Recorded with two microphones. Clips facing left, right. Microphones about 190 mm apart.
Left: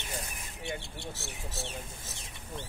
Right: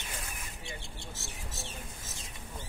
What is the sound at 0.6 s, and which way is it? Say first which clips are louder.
Speech: left 10 dB; 65° left (ahead or behind).